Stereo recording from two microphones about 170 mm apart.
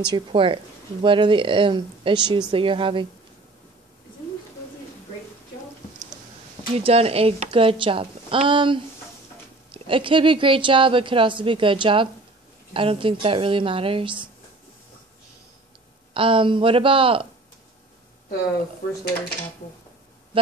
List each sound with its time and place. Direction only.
0.0 s speech: 30° right (ahead or behind)
6.8 s speech: 35° right (ahead or behind)
16.1 s speech: 30° right (ahead or behind)